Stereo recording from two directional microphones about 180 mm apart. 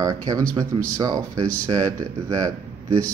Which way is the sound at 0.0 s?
20° right (ahead or behind).